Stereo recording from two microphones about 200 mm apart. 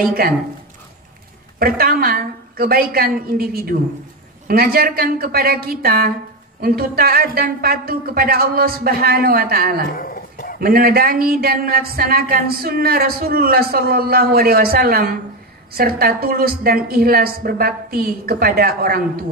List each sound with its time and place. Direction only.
0.0 s speech: 45° right (ahead or behind)
1.6 s speech: 50° right (ahead or behind)
9.8 s a sound: 45° left (ahead or behind)
10.6 s speech: 50° right (ahead or behind)